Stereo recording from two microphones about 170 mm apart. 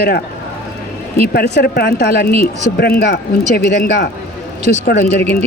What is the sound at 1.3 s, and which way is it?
Speech, 65° left (ahead or behind).